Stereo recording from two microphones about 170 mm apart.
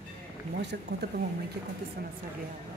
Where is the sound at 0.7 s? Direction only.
70° right (ahead or behind).